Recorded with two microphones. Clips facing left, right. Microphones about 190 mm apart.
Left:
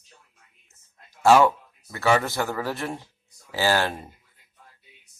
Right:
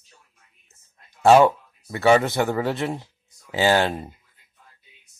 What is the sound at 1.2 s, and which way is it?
Speech, 25° right (ahead or behind).